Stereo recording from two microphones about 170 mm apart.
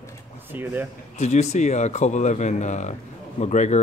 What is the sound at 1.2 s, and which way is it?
Speech, 40° left (ahead or behind).